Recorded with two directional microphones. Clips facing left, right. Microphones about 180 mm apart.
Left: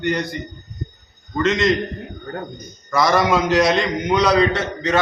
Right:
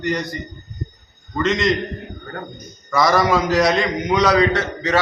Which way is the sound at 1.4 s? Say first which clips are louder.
Left 1 dB; centre (ahead or behind).